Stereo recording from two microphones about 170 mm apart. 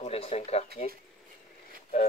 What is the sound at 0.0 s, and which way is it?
Speech, 35° left (ahead or behind).